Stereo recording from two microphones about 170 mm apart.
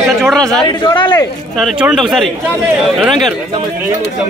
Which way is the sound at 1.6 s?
Centre (ahead or behind).